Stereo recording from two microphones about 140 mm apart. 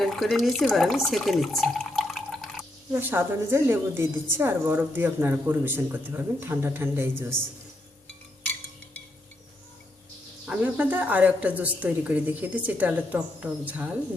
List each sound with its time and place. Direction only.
0.0 s speech: centre (ahead or behind)
2.9 s a woman's voice: 15° right (ahead or behind)
10.4 s a woman's voice: 10° right (ahead or behind)